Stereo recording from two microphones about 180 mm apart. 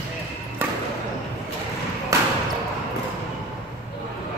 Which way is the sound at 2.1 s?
15° right (ahead or behind).